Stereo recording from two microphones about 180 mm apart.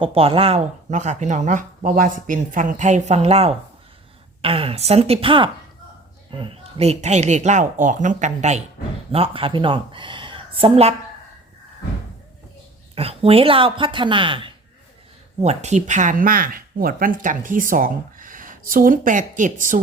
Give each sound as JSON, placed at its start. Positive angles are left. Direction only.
{"t": 0.0, "sound": "a woman's voice", "side_deg": -30}
{"t": 13.0, "sound": "speech", "side_deg": -30}